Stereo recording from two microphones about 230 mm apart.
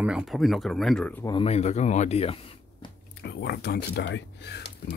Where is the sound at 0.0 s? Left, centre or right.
Centre.